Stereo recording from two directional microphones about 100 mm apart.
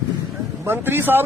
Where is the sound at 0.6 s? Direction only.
20° right (ahead or behind).